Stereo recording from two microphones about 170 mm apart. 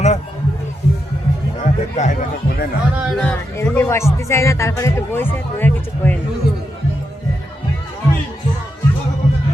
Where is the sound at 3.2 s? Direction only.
10° left (ahead or behind).